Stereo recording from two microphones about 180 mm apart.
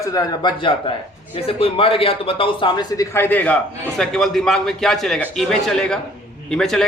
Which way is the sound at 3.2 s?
10° left (ahead or behind).